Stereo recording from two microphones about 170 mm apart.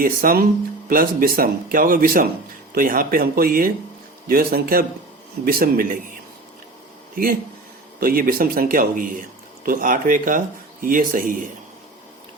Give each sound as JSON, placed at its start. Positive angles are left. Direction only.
{"t": 0.0, "sound": "speech", "side_deg": -55}
{"t": 7.9, "sound": "speech", "side_deg": -60}